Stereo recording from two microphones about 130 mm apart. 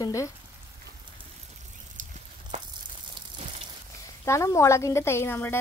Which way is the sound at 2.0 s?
90° right.